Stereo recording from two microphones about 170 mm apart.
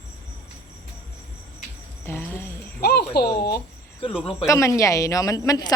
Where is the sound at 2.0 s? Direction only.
15° left (ahead or behind).